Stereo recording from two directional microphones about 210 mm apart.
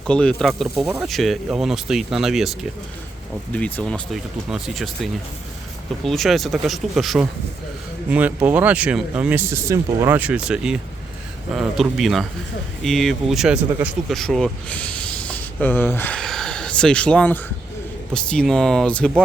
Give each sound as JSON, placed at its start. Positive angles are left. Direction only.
{"t": 0.1, "sound": "speech", "side_deg": 5}